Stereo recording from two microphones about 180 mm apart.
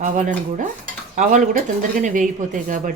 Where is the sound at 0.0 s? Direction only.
45° right (ahead or behind).